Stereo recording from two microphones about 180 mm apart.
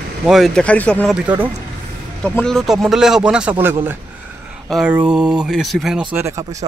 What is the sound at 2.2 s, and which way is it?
Speech, 5° left (ahead or behind).